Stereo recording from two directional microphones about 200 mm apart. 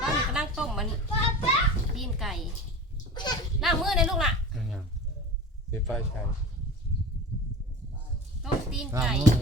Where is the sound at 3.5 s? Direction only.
Centre (ahead or behind).